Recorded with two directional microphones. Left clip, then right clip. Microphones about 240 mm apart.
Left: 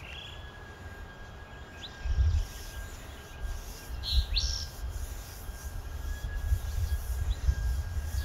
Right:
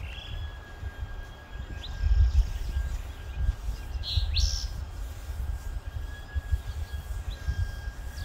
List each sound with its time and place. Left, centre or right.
4.0 s chirp: right